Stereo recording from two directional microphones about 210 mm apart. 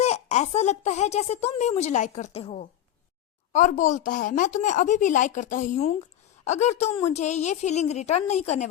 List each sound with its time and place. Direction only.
0.0 s a woman's voice: 30° left (ahead or behind)